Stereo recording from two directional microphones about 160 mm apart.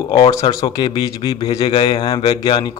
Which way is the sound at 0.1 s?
25° left (ahead or behind).